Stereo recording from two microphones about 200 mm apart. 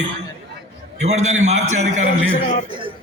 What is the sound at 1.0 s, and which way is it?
Speech, 35° right (ahead or behind).